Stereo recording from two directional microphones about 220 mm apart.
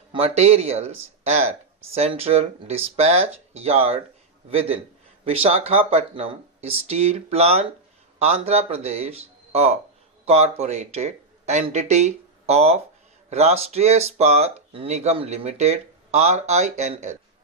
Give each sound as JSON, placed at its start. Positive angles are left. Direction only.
{"t": 0.1, "sound": "speech", "side_deg": -25}
{"t": 5.2, "sound": "speech", "side_deg": -25}